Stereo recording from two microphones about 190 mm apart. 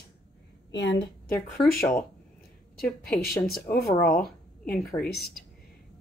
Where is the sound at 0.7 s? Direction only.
65° left (ahead or behind).